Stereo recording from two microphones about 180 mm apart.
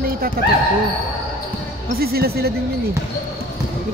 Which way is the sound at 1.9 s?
60° right (ahead or behind).